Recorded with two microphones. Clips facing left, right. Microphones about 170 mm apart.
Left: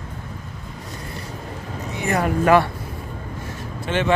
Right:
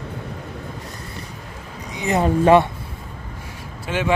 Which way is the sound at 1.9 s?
20° right (ahead or behind).